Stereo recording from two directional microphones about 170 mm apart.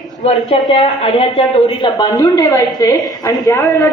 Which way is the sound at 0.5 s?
30° left (ahead or behind).